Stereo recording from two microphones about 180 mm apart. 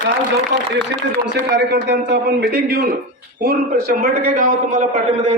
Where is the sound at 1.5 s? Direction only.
70° right (ahead or behind); by 4.8 s 50° right (ahead or behind).